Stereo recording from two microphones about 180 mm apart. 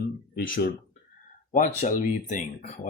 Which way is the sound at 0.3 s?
55° left (ahead or behind).